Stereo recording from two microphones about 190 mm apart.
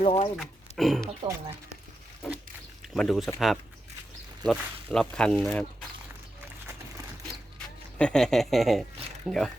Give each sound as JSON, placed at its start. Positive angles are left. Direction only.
{"t": 0.0, "sound": "speech", "side_deg": 30}
{"t": 0.3, "sound": "speech", "side_deg": 0}
{"t": 2.9, "sound": "speech", "side_deg": 0}
{"t": 7.9, "sound": "speech", "side_deg": 5}